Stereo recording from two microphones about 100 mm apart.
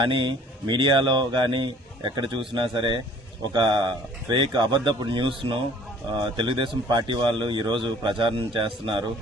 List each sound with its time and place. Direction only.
0.0 s speech: 55° right (ahead or behind)